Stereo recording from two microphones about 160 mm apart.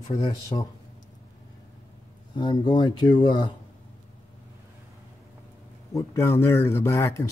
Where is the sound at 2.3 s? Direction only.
30° left (ahead or behind).